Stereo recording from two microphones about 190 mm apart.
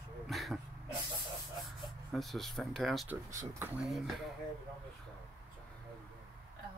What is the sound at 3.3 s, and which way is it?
Speech, 15° right (ahead or behind).